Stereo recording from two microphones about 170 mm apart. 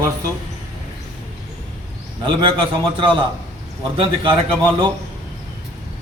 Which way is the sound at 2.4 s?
30° right (ahead or behind).